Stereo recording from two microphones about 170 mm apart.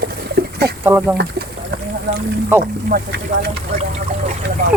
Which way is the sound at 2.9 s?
50° right (ahead or behind).